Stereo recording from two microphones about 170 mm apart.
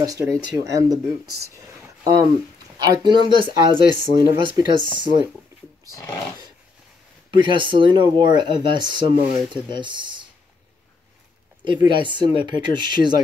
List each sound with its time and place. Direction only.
0.0 s speech: 20° right (ahead or behind)
5.9 s dog: 20° left (ahead or behind)
7.3 s speech: 30° right (ahead or behind)
11.6 s speech: 25° right (ahead or behind)